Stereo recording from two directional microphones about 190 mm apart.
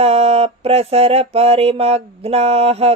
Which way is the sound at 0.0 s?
35° right (ahead or behind).